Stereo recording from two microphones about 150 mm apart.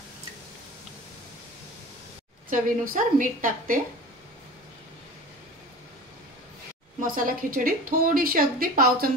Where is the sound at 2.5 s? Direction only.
65° right (ahead or behind).